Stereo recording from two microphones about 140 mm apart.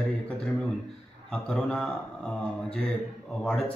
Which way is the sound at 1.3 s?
5° left (ahead or behind).